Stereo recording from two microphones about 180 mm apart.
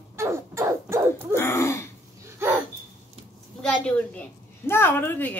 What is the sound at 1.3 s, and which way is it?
Speech, 15° left (ahead or behind).